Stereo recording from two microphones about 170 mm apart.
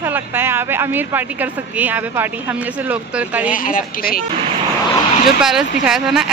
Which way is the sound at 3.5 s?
55° left (ahead or behind).